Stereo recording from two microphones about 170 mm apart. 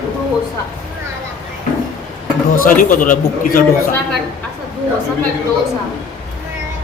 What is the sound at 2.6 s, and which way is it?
A man's voice, 55° left (ahead or behind).